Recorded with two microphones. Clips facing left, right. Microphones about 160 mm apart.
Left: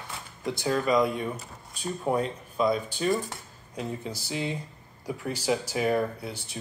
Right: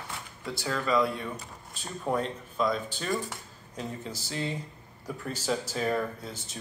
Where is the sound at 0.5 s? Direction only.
20° left (ahead or behind).